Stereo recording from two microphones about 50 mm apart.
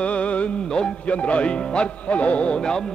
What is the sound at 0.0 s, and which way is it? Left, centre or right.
Music, left.